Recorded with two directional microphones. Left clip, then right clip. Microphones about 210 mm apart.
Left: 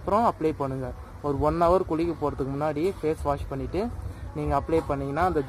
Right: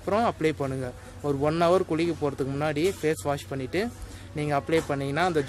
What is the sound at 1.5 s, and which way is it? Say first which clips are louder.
Speech: left 1 dB; 25° right (ahead or behind).